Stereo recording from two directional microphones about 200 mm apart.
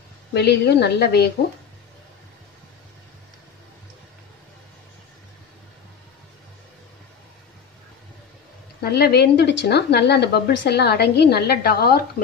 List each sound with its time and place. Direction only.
0.3 s speech: 55° left (ahead or behind)
8.8 s speech: 50° left (ahead or behind)